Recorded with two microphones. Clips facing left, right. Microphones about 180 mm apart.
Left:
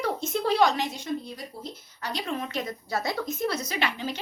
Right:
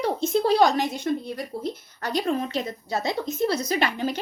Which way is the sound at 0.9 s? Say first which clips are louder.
Right 6 dB; 60° right (ahead or behind).